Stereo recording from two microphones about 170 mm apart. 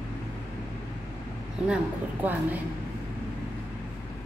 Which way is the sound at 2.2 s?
10° right (ahead or behind).